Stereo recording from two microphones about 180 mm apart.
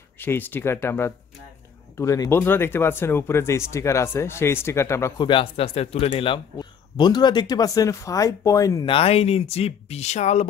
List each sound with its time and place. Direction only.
0.2 s speech: 10° left (ahead or behind)
8.9 s speech: 30° left (ahead or behind)